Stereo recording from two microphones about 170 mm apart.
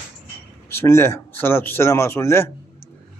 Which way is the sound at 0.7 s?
15° left (ahead or behind).